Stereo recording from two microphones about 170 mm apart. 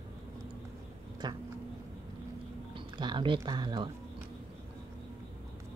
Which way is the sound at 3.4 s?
25° right (ahead or behind).